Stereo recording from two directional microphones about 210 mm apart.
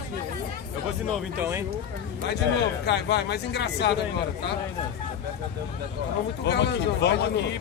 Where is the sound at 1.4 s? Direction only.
10° right (ahead or behind).